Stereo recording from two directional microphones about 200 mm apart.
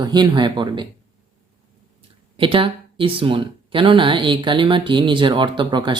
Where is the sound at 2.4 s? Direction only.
25° right (ahead or behind).